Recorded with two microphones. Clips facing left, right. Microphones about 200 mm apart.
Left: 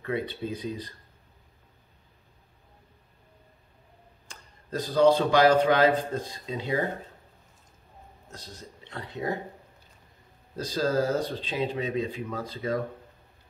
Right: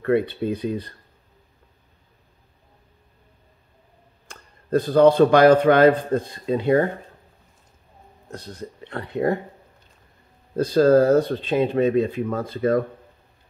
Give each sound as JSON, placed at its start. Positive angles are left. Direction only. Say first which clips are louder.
{"t": 0.0, "sound": "speech", "louder": "right 10 dB", "side_deg": -60}
{"t": 4.3, "sound": "speech", "louder": "right 13 dB", "side_deg": -55}
{"t": 8.3, "sound": "speech", "louder": "right 10 dB", "side_deg": -60}
{"t": 10.5, "sound": "speech", "louder": "right 11 dB", "side_deg": -55}